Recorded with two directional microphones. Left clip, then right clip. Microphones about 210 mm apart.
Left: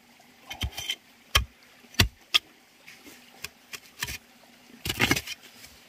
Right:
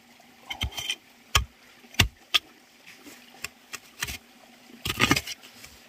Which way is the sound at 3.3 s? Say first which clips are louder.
Right 2 dB; centre (ahead or behind).